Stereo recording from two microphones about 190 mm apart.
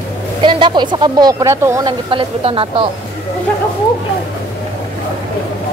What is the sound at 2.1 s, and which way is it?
Speech, 30° right (ahead or behind).